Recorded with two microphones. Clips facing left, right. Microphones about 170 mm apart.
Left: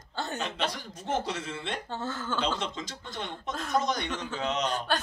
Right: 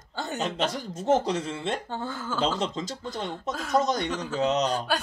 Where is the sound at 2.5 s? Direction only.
40° right (ahead or behind).